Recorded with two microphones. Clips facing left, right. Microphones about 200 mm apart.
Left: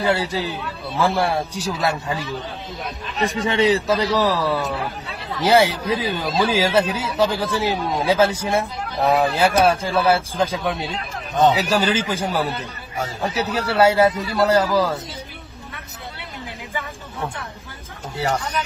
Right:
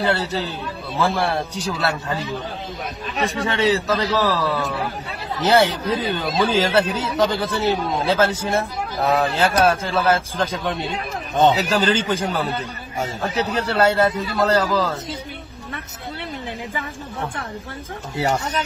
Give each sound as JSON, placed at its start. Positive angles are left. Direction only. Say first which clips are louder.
{"t": 0.0, "sound": "speech", "louder": "left 1 dB", "side_deg": 10}
{"t": 3.4, "sound": "speech", "louder": "left 2 dB", "side_deg": 15}